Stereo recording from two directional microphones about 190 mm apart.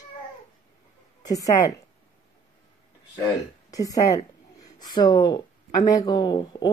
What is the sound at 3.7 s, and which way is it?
Speech, 20° left (ahead or behind).